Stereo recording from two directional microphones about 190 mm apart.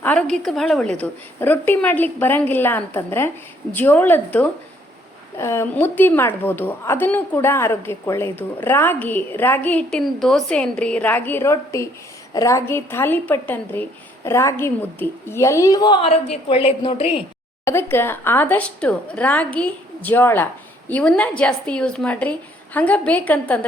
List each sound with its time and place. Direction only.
0.0 s a woman's voice: 5° left (ahead or behind); by 17.2 s 30° left (ahead or behind)
17.7 s a woman's voice: 15° left (ahead or behind)